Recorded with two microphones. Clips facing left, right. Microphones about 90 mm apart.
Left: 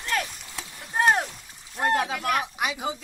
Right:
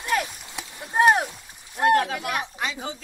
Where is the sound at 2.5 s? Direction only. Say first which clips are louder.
Left 2 dB; 15° left (ahead or behind).